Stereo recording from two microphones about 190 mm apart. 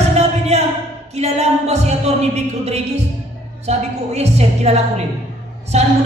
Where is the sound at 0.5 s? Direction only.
35° right (ahead or behind).